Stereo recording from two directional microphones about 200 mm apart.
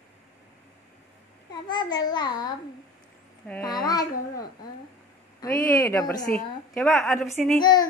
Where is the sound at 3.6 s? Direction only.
20° left (ahead or behind).